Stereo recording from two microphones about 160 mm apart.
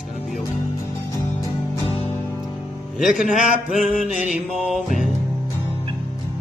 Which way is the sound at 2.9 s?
Centre (ahead or behind).